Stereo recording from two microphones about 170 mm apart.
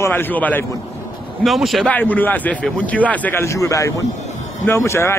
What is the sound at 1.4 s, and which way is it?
A man's voice, centre (ahead or behind).